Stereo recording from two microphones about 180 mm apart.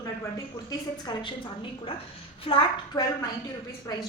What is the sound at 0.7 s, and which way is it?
Speech, 25° left (ahead or behind).